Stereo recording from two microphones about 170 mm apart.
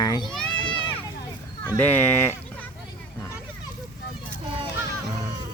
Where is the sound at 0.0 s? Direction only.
20° left (ahead or behind).